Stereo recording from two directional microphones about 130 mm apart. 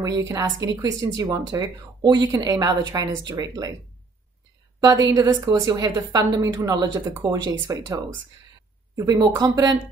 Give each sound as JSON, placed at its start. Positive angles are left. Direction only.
{"t": 0.0, "sound": "speech", "side_deg": -25}
{"t": 4.7, "sound": "a woman's voice", "side_deg": -30}